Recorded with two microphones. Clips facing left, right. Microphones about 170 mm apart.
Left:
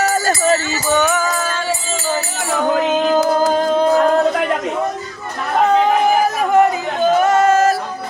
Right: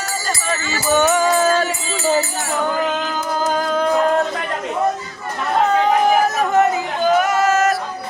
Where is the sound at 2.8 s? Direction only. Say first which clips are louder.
Left 6 dB; 25° left (ahead or behind).